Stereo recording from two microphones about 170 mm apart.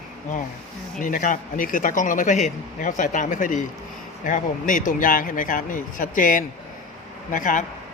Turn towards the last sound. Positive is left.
turn(degrees=50)  # may be behind; listen again after turning